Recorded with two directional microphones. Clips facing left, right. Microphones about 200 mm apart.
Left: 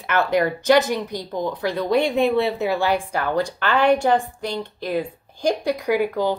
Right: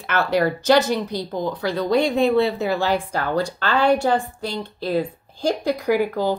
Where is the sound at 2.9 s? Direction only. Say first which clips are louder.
Even; 15° left (ahead or behind).